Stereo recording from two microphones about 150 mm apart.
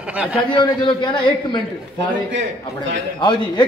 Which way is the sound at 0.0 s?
10° right (ahead or behind).